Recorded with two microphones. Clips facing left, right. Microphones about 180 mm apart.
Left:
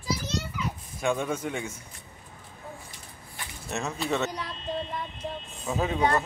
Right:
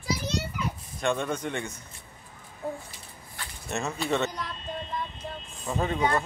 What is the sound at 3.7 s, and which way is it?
Speech, centre (ahead or behind).